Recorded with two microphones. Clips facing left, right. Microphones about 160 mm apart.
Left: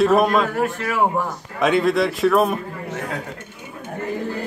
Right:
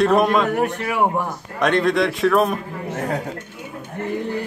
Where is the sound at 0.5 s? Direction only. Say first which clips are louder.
Right 1 dB; 20° right (ahead or behind).